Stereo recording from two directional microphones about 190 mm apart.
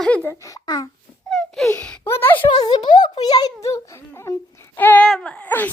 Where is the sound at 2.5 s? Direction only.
25° left (ahead or behind); by 5.7 s 10° left (ahead or behind).